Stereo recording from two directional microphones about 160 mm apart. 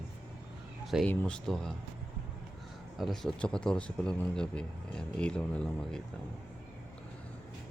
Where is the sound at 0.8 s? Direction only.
Centre (ahead or behind).